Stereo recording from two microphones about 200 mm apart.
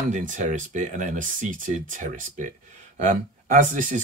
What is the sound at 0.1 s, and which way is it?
Speech, 40° right (ahead or behind).